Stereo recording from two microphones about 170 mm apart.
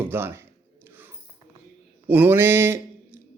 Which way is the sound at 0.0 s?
15° right (ahead or behind).